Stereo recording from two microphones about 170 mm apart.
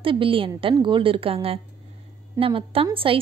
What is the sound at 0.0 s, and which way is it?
A woman's voice, 30° right (ahead or behind).